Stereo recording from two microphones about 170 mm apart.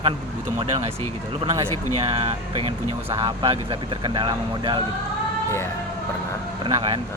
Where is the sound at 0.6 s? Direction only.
30° right (ahead or behind).